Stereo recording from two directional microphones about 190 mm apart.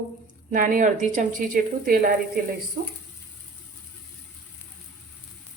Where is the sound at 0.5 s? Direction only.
45° right (ahead or behind).